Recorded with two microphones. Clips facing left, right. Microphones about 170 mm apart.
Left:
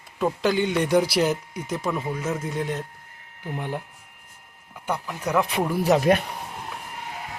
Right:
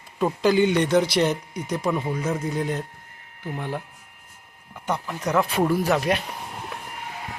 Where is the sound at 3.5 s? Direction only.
15° left (ahead or behind).